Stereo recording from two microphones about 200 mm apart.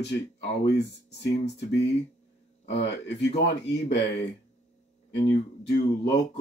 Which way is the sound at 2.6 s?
60° left (ahead or behind).